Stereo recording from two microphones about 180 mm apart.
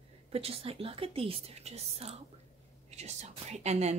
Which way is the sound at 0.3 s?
35° right (ahead or behind).